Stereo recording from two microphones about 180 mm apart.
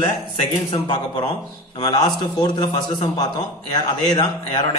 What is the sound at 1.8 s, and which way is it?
A man's voice, 20° left (ahead or behind).